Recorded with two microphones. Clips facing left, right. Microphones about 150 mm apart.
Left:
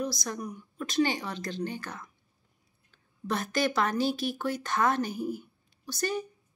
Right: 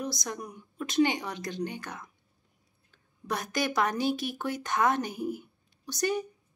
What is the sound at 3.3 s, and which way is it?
A woman's voice, 15° right (ahead or behind).